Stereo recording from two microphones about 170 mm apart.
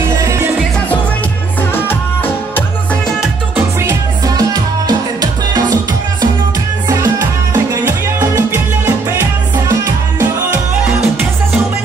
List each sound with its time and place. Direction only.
1.7 s music: 10° left (ahead or behind)
3.2 s music: 10° right (ahead or behind)
4.4 s music: 20° right (ahead or behind)
7.5 s music: 20° right (ahead or behind)